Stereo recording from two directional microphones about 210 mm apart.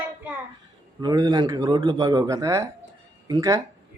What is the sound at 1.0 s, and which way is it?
Speech, 20° right (ahead or behind).